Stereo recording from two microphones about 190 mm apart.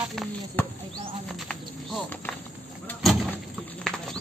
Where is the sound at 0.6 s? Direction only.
10° left (ahead or behind).